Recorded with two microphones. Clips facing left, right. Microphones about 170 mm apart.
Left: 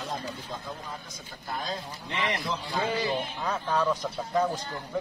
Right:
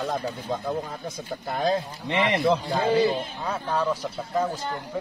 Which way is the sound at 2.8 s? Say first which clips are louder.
Right 10 dB; 40° right (ahead or behind).